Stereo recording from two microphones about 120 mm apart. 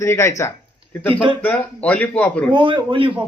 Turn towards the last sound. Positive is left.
turn(degrees=-45)  # may be behind; listen again after turning